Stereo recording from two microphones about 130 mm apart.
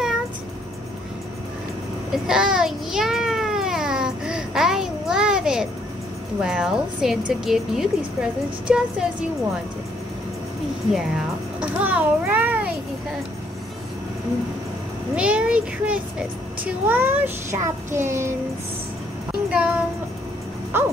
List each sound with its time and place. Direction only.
2.1 s a sound: 5° right (ahead or behind)
6.4 s a woman's voice: 5° right (ahead or behind)
11.6 s a child's voice: 10° right (ahead or behind)
15.1 s a child's voice: 10° right (ahead or behind)
19.5 s a child's voice: 10° right (ahead or behind)